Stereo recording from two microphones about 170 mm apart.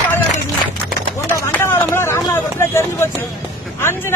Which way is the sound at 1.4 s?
15° left (ahead or behind).